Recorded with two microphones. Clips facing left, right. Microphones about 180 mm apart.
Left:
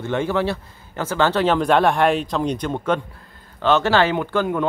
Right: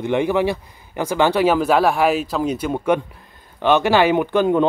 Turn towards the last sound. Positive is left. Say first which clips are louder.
# right 5 dB
turn(degrees=-20)  # may be behind; listen again after turning